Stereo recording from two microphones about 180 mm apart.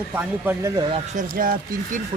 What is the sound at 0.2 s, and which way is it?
Speech, 10° right (ahead or behind).